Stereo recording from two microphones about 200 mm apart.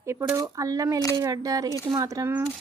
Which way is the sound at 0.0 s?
15° right (ahead or behind).